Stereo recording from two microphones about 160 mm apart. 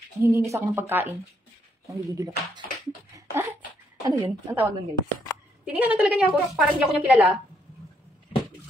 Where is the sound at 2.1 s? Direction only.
25° right (ahead or behind).